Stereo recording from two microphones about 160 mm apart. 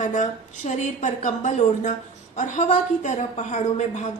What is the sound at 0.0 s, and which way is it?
A woman's voice, 50° left (ahead or behind).